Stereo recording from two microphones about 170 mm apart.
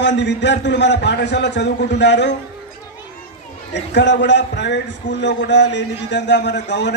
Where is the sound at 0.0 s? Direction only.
90° left.